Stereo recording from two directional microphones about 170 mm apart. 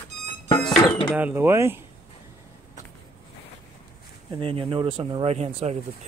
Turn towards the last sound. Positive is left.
turn(degrees=-40)  # may be behind; listen again after turning